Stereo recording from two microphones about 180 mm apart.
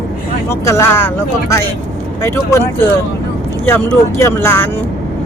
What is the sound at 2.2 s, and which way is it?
Speech, 15° left (ahead or behind).